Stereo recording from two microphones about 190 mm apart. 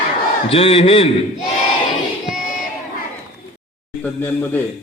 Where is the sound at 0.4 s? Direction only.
30° left (ahead or behind).